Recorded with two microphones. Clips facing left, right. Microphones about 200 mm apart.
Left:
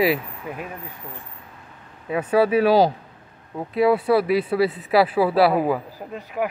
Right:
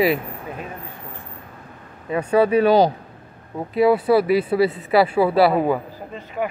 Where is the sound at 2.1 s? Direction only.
5° left (ahead or behind).